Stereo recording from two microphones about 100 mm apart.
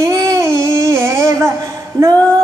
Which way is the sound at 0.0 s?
30° right (ahead or behind).